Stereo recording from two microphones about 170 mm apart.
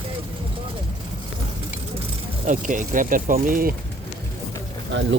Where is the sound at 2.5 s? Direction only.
50° right (ahead or behind).